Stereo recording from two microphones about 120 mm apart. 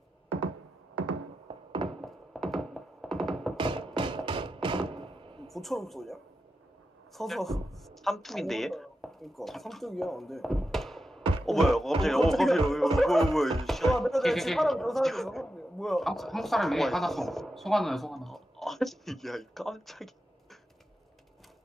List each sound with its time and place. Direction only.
1.5 s music: 45° right (ahead or behind)
2.0 s music: centre (ahead or behind)
3.5 s music: 45° right (ahead or behind)
5.5 s a man's voice: centre (ahead or behind)